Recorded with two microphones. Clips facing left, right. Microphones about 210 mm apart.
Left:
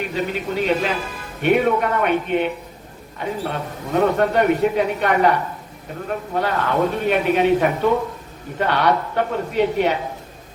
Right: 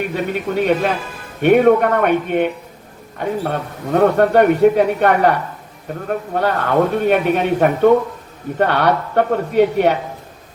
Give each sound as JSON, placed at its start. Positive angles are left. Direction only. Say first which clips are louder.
{"t": 0.1, "sound": "a man's voice", "louder": "right 3 dB", "side_deg": -50}